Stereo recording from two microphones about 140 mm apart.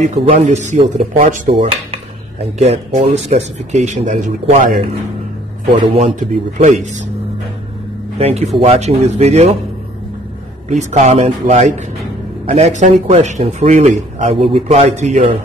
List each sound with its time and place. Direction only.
0.0 s a man's voice: 55° right (ahead or behind)
2.6 s a man's voice: 50° right (ahead or behind); by 4.7 s 70° right (ahead or behind)
5.9 s a man's voice: 60° right (ahead or behind)
8.2 s speech: 50° right (ahead or behind)
10.7 s a man's voice: 55° right (ahead or behind)
14.3 s speech: 45° right (ahead or behind)